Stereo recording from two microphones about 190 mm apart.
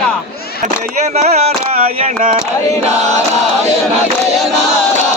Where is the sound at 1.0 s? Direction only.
35° right (ahead or behind).